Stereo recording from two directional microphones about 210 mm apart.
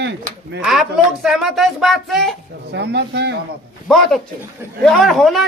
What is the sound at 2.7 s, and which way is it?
Speech, 55° right (ahead or behind).